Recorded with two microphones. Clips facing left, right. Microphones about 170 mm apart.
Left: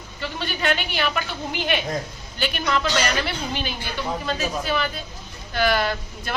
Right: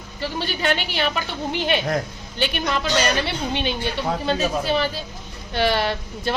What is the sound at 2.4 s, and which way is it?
A woman's voice, 20° right (ahead or behind).